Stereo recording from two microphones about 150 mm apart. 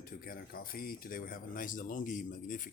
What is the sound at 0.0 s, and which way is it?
Speech, 70° left (ahead or behind).